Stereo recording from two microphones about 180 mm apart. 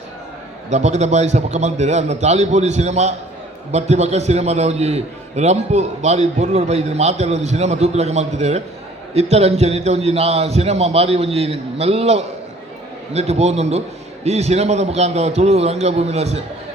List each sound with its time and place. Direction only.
0.7 s a man's voice: 40° right (ahead or behind)